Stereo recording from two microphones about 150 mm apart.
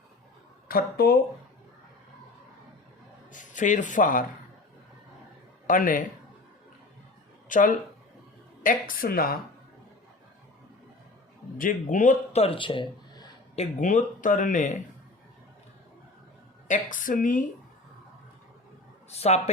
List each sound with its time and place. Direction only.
0.7 s speech: 85° left
3.3 s speech: 55° left (ahead or behind)
5.6 s speech: 65° left (ahead or behind)
7.4 s speech: 60° left (ahead or behind); by 9.4 s 80° left
11.5 s speech: 65° left (ahead or behind); by 13.2 s 35° left (ahead or behind)
13.6 s speech: 60° left (ahead or behind)
16.6 s speech: 60° left (ahead or behind)
19.1 s speech: 45° left (ahead or behind)